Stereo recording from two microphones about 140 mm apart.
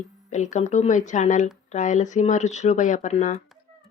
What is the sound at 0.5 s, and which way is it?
Speech, 55° left (ahead or behind).